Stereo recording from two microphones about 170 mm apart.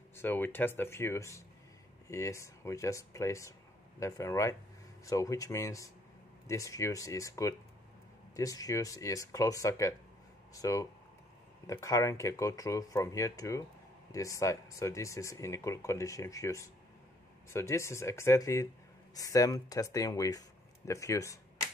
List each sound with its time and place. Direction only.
0.1 s speech: 10° left (ahead or behind)